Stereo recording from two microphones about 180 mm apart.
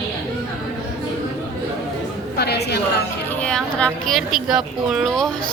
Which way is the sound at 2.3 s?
65° left (ahead or behind).